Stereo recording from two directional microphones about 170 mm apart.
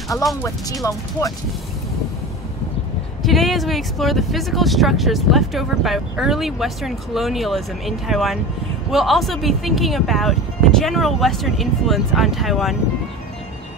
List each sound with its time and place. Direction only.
0.2 s speech: centre (ahead or behind)
0.8 s speech: 20° left (ahead or behind)
3.2 s speech: centre (ahead or behind)